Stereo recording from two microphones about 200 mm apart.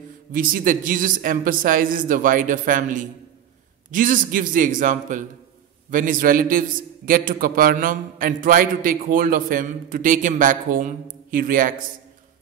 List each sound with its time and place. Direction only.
0.3 s a man's voice: 45° right (ahead or behind)